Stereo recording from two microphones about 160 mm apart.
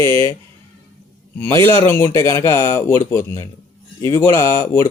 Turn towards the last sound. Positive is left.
turn(degrees=15)  # may be behind; listen again after turning